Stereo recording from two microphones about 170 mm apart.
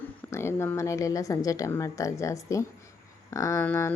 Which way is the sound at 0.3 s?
15° left (ahead or behind).